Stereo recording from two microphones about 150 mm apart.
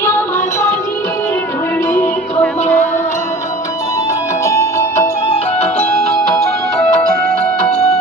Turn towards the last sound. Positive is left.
turn(degrees=5)  # may be behind; listen again after turning